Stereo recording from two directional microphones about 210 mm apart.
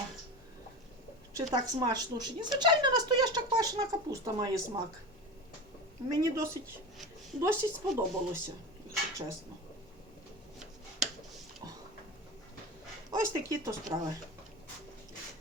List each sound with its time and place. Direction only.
1.4 s speech: 20° right (ahead or behind)
6.1 s speech: 15° right (ahead or behind)
13.1 s speech: 15° right (ahead or behind)